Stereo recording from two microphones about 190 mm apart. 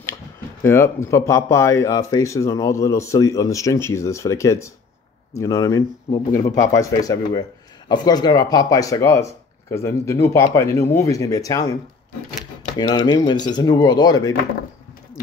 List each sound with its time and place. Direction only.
0.7 s speech: 15° left (ahead or behind)
12.7 s speech: 20° left (ahead or behind)